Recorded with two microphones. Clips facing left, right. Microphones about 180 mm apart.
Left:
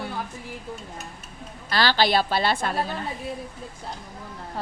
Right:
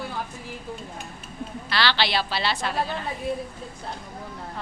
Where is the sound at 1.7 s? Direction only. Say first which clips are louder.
Left 4 dB; 45° left (ahead or behind).